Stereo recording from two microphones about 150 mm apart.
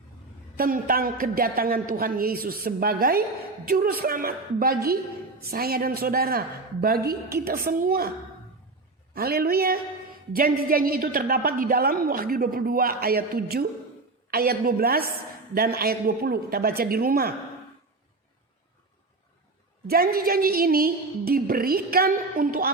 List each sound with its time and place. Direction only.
0.5 s a woman's voice: 75° right (ahead or behind)
9.1 s a man's voice: 90° right
10.3 s a woman's voice: 75° right (ahead or behind)
19.9 s a woman's voice: 85° right